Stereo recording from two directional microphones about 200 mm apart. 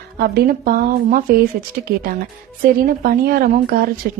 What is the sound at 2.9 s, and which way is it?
A woman's voice, 45° right (ahead or behind).